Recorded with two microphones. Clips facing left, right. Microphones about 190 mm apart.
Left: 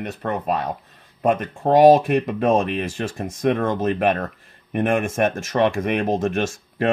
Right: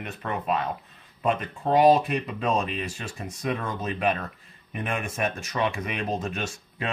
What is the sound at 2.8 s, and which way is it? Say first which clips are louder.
Speech: left 8 dB; 90° left.